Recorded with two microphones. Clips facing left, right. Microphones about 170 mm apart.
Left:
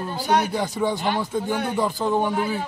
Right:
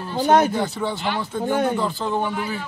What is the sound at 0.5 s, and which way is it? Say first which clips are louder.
A man's voice: left 1 dB; 10° left (ahead or behind).